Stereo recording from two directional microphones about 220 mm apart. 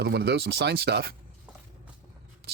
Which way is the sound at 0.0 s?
50° right (ahead or behind).